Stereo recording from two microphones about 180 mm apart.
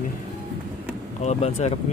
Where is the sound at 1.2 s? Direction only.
40° left (ahead or behind).